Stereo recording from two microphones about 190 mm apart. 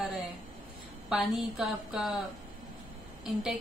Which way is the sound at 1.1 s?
5° right (ahead or behind).